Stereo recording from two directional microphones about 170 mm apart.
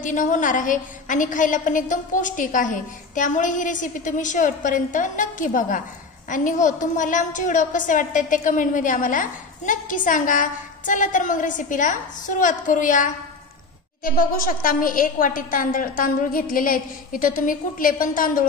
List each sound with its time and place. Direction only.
0.0 s a woman's voice: 50° left (ahead or behind)